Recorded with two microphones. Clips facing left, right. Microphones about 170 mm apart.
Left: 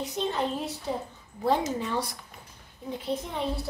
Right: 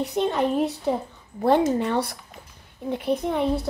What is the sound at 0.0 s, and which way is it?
A child's voice, 60° right (ahead or behind).